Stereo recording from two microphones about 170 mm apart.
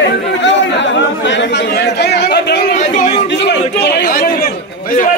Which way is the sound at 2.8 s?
45° left (ahead or behind).